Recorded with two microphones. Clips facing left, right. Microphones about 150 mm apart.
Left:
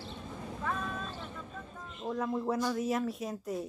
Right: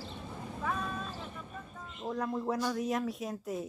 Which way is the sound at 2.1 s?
Centre (ahead or behind).